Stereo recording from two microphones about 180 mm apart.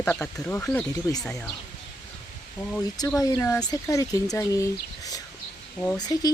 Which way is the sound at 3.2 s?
15° left (ahead or behind).